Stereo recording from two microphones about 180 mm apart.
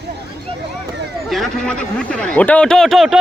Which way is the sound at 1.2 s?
Centre (ahead or behind).